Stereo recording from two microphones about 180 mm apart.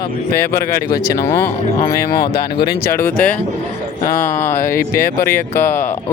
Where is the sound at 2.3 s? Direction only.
65° left (ahead or behind).